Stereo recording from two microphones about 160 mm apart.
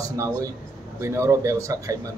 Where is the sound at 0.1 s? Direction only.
20° right (ahead or behind).